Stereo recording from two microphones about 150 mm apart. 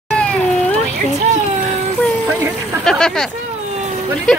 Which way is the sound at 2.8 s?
5° left (ahead or behind).